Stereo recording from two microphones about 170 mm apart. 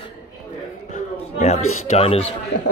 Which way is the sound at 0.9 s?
40° left (ahead or behind).